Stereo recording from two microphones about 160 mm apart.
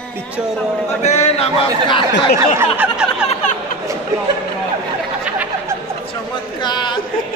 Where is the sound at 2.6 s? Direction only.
10° right (ahead or behind).